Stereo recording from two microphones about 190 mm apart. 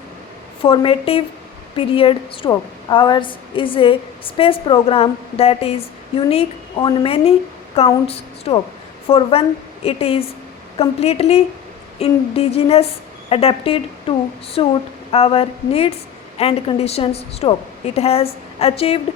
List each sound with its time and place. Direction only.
0.6 s a woman's voice: 30° left (ahead or behind)